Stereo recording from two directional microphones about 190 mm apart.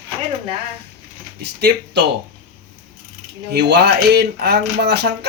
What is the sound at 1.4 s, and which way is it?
Speech, 60° right (ahead or behind).